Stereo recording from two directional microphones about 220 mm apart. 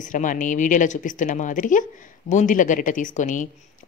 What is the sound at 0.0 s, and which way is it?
A woman's voice, 35° left (ahead or behind).